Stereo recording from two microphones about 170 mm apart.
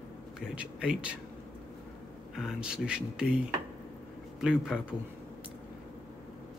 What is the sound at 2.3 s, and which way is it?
Speech, 5° right (ahead or behind).